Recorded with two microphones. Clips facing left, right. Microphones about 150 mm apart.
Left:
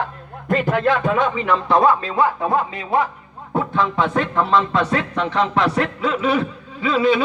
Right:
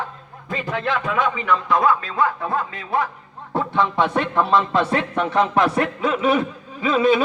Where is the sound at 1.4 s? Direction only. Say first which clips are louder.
Left 3 dB; 30° left (ahead or behind).